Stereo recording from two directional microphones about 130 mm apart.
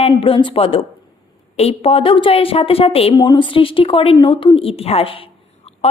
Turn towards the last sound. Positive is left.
turn(degrees=45)  # may be behind; listen again after turning